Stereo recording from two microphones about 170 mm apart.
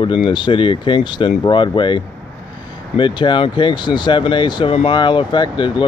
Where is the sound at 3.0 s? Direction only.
25° left (ahead or behind).